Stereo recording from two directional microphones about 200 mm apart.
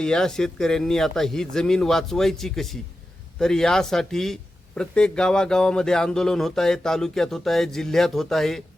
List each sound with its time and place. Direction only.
0.0 s a man's voice: 5° left (ahead or behind)